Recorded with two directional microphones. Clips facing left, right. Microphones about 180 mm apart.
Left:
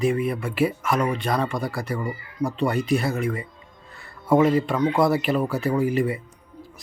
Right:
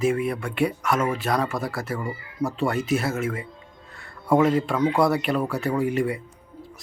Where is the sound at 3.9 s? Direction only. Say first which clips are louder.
Left 1 dB; centre (ahead or behind).